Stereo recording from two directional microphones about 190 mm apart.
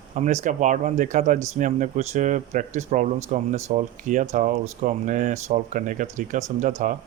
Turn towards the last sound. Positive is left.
turn(degrees=-45)  # may be behind; listen again after turning